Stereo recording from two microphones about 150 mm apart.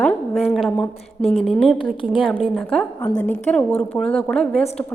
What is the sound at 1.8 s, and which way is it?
Speech, 35° left (ahead or behind).